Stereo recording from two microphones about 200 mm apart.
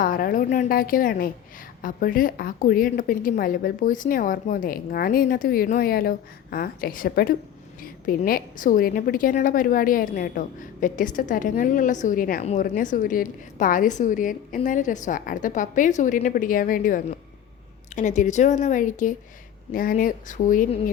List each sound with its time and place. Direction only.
0.0 s a woman's voice: 45° left (ahead or behind)